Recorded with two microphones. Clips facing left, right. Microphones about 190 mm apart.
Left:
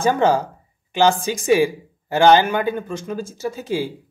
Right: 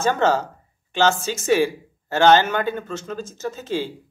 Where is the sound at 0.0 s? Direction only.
10° left (ahead or behind).